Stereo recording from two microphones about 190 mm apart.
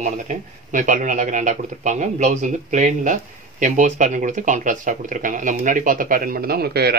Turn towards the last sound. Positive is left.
turn(degrees=-55)  # may be behind; listen again after turning